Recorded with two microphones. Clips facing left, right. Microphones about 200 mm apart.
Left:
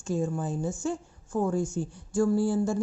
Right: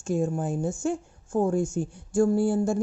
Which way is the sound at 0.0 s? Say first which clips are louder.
Right 3 dB; 50° right (ahead or behind).